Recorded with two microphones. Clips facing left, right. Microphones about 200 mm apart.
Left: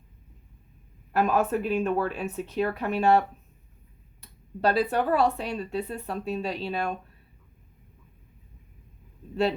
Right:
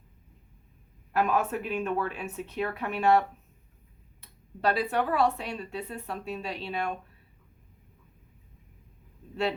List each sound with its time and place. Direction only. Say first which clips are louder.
1.1 s speech: left 3 dB; 35° left (ahead or behind)